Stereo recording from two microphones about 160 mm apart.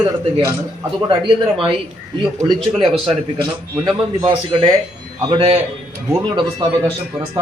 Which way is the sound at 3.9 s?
30° right (ahead or behind).